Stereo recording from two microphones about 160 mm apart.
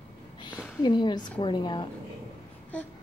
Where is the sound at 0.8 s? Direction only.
25° left (ahead or behind).